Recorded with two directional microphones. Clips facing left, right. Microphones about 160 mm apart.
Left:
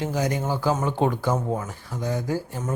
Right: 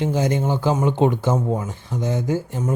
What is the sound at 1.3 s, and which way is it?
Speech, 10° right (ahead or behind).